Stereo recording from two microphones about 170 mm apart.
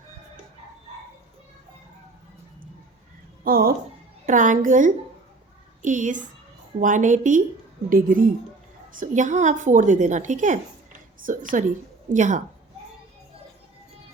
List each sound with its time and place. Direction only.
3.4 s speech: 60° right (ahead or behind)
4.3 s a woman's voice: 50° right (ahead or behind)